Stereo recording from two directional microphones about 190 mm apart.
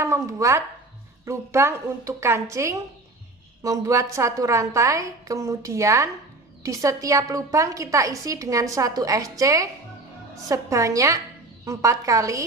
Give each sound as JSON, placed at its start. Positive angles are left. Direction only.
{"t": 0.0, "sound": "a woman's voice", "side_deg": -15}